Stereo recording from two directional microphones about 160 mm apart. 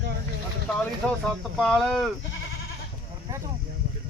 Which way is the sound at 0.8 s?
5° left (ahead or behind).